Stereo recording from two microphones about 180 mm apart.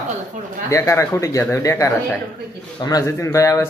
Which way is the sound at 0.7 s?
15° left (ahead or behind).